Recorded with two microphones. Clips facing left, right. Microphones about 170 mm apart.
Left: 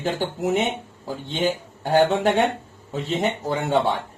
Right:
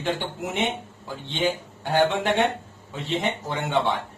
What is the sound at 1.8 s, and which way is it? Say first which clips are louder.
A man's voice: left 4 dB; 40° left (ahead or behind).